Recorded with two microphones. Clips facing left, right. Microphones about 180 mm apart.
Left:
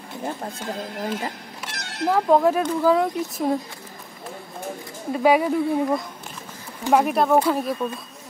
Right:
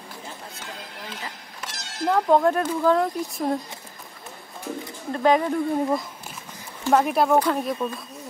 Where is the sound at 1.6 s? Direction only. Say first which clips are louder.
Left 2 dB; 60° left (ahead or behind).